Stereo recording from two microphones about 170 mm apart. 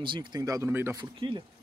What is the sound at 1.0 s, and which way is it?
Speech, 30° right (ahead or behind).